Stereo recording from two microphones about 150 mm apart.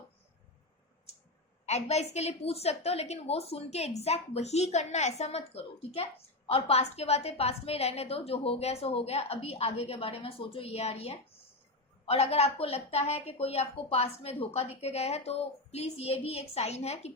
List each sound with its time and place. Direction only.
1.6 s a woman's voice: 45° left (ahead or behind)